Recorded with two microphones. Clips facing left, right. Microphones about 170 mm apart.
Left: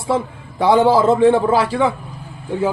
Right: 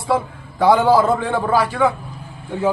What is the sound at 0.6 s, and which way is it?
A man's voice, 25° left (ahead or behind).